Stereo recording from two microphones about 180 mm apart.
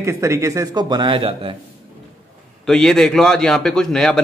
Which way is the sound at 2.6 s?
5° left (ahead or behind).